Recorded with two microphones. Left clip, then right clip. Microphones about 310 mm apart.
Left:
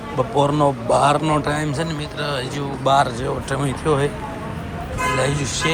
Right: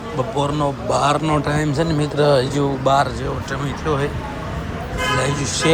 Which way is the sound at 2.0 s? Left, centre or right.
Right.